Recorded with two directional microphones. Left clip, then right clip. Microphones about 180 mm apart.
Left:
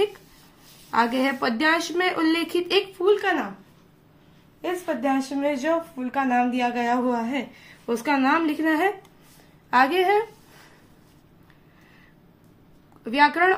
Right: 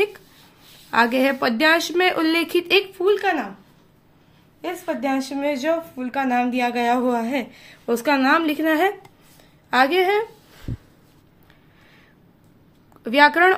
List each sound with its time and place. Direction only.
0.8 s speech: 40° right (ahead or behind)
4.6 s speech: 20° right (ahead or behind); by 8.9 s 35° right (ahead or behind)
9.7 s a sound: 30° right (ahead or behind)
13.0 s speech: 35° right (ahead or behind)